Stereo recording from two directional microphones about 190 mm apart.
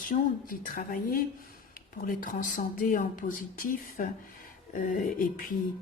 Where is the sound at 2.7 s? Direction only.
45° left (ahead or behind).